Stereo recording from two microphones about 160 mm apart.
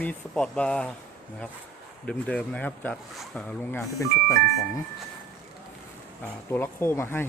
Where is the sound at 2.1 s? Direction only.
5° left (ahead or behind).